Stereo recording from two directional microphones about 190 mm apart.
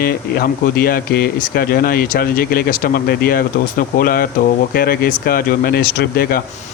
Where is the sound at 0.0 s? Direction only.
50° left (ahead or behind).